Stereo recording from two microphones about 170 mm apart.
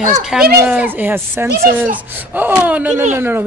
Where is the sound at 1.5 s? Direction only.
65° right (ahead or behind).